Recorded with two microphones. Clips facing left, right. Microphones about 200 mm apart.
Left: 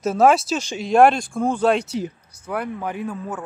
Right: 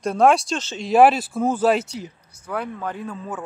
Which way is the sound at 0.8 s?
5° right (ahead or behind).